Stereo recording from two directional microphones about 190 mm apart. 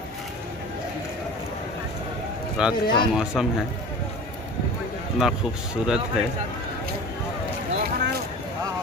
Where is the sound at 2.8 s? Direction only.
25° left (ahead or behind).